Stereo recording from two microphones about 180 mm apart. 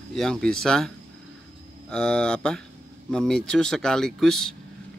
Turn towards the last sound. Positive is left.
turn(degrees=0)  # may be behind; listen again after turning